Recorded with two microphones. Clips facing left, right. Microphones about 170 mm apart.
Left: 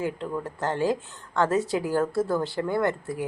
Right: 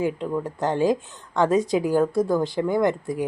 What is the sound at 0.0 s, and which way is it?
Speech, 15° right (ahead or behind).